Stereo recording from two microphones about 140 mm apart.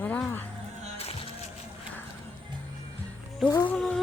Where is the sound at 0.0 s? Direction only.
10° left (ahead or behind).